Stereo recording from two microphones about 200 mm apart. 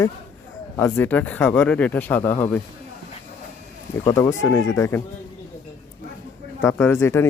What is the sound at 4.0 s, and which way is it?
Speech, 15° left (ahead or behind).